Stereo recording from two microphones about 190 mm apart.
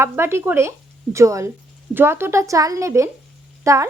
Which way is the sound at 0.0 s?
15° right (ahead or behind).